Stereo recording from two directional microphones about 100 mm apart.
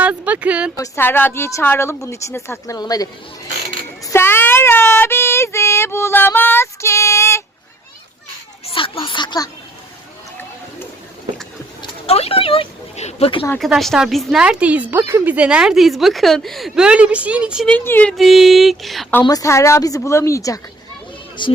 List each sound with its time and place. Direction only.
0.0 s speech: 15° right (ahead or behind)
0.9 s a woman's voice: 20° left (ahead or behind)
2.7 s speech: 40° left (ahead or behind)
4.0 s child singing: 25° left (ahead or behind)
8.6 s a sound: 65° left (ahead or behind); by 9.5 s 45° left (ahead or behind)
12.0 s speech: 90° left
13.7 s a sound: centre (ahead or behind)
14.4 s speech: 15° right (ahead or behind)
17.7 s speech: 20° left (ahead or behind)
18.2 s a sound: centre (ahead or behind)
19.2 s speech: 35° left (ahead or behind)
21.4 s speech: 50° left (ahead or behind)